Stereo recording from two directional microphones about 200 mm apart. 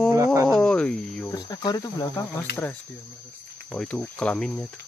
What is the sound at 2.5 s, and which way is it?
Speech, 10° left (ahead or behind).